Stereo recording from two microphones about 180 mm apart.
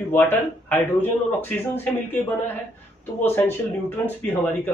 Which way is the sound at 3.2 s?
10° left (ahead or behind).